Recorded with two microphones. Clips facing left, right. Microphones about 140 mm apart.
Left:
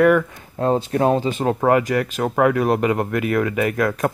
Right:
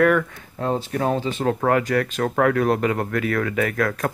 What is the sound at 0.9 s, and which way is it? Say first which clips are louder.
Speech: left 4 dB; 30° left (ahead or behind).